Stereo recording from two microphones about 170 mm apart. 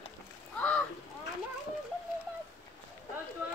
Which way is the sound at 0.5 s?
10° left (ahead or behind).